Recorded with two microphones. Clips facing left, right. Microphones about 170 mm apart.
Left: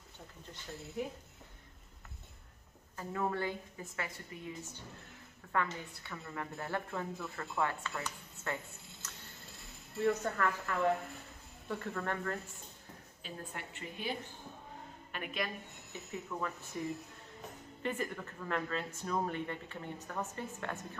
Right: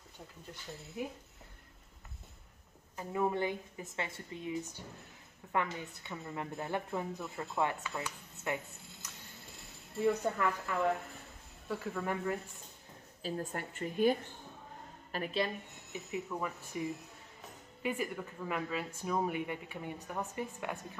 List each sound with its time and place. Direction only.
3.0 s speech: 15° right (ahead or behind)
5.5 s speech: 20° right (ahead or behind)
9.0 s music: 10° right (ahead or behind)
10.0 s speech: 15° right (ahead or behind)
13.2 s a woman's voice: 45° right (ahead or behind)
15.1 s a woman's voice: 30° right (ahead or behind)
15.9 s speech: 10° right (ahead or behind)
17.8 s speech: 10° right (ahead or behind)